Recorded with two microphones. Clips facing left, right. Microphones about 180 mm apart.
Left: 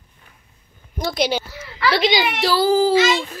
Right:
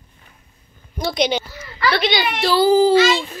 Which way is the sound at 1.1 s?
5° left (ahead or behind).